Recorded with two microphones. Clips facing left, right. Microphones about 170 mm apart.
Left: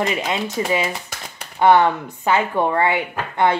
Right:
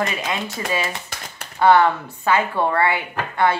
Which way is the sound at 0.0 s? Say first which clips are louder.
Left 3 dB; 25° left (ahead or behind).